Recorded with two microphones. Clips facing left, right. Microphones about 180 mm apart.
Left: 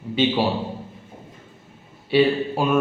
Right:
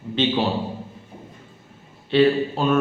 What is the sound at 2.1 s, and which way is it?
Speech, 10° left (ahead or behind).